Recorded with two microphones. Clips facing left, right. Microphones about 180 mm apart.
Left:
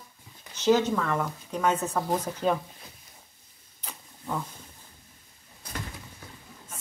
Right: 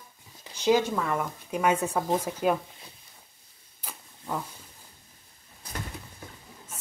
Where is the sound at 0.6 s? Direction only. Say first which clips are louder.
Left 1 dB; 10° right (ahead or behind).